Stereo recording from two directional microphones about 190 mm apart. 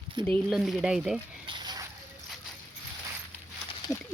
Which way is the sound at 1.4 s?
20° right (ahead or behind).